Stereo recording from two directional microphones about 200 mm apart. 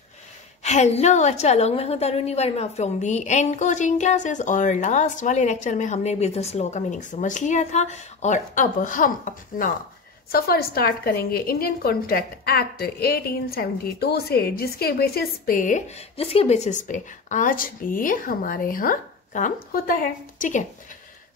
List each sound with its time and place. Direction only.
0.7 s a woman's voice: 35° left (ahead or behind)